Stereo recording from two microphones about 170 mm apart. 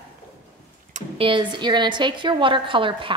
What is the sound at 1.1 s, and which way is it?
A woman's voice, 30° right (ahead or behind).